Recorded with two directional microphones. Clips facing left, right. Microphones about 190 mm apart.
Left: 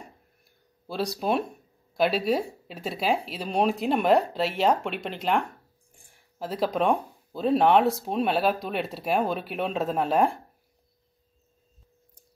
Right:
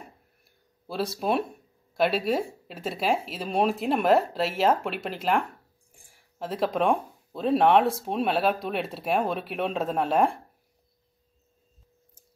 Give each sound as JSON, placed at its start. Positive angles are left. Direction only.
{"t": 0.8, "sound": "speech", "side_deg": 0}